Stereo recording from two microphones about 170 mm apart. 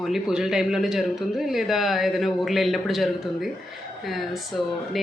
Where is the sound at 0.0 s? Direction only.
Centre (ahead or behind).